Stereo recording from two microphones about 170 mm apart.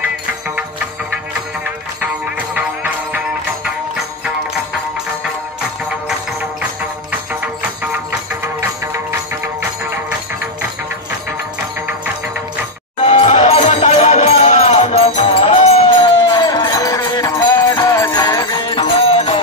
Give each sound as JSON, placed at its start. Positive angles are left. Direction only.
{"t": 2.0, "sound": "music", "side_deg": -10}
{"t": 13.0, "sound": "music", "side_deg": 40}
{"t": 16.3, "sound": "music", "side_deg": 25}